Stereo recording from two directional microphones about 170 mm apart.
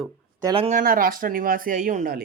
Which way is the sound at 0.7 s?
55° right (ahead or behind).